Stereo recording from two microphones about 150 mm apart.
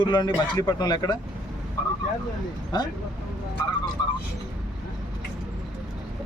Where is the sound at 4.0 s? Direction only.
30° left (ahead or behind).